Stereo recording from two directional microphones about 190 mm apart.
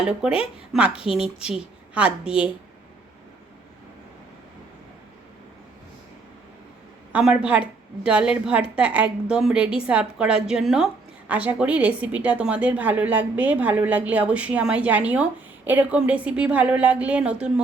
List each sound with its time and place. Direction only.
0.0 s a woman's voice: 5° right (ahead or behind)
7.1 s a woman's voice: 5° right (ahead or behind)